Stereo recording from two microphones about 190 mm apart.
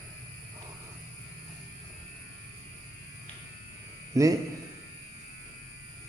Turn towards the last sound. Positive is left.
turn(degrees=-20)  # may be behind; listen again after turning